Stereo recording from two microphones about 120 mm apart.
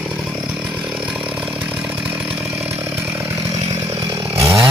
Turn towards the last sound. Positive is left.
turn(degrees=-25)  # may be behind; listen again after turning